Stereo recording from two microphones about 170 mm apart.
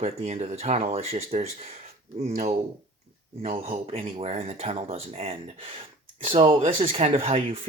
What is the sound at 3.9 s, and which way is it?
Speech, 35° right (ahead or behind).